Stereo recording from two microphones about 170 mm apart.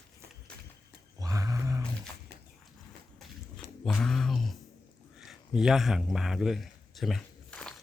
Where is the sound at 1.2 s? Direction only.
20° right (ahead or behind).